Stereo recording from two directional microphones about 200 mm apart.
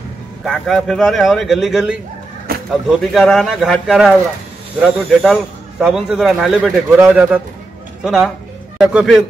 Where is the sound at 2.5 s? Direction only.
50° right (ahead or behind).